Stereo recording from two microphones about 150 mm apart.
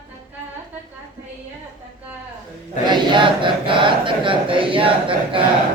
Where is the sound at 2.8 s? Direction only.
30° right (ahead or behind).